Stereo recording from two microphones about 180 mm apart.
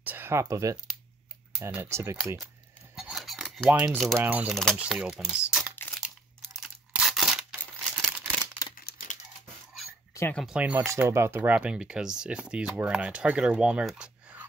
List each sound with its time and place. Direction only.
0.0 s speech: 10° right (ahead or behind)
1.6 s cutlery: 15° right (ahead or behind)
3.0 s cutlery: centre (ahead or behind)
4.6 s speech: centre (ahead or behind)
5.8 s crunch: 5° left (ahead or behind)
6.6 s tearing: 5° right (ahead or behind)
8.7 s crumpling: 50° left (ahead or behind)
10.1 s speech: 10° left (ahead or behind)
10.4 s speech: 5° right (ahead or behind)